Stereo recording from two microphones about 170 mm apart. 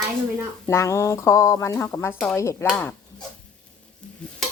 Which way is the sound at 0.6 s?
15° left (ahead or behind).